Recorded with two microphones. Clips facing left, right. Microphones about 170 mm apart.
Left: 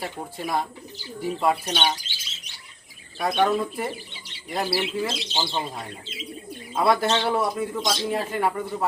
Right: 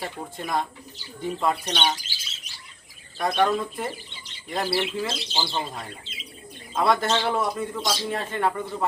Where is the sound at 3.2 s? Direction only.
Centre (ahead or behind).